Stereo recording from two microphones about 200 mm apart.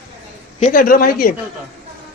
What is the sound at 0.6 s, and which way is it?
Speech, 40° left (ahead or behind).